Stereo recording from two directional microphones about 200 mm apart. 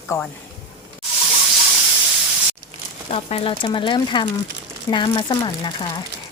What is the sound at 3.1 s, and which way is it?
Speech, 30° left (ahead or behind).